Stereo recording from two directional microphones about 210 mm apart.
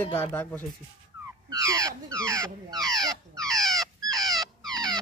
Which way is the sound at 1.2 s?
15° right (ahead or behind).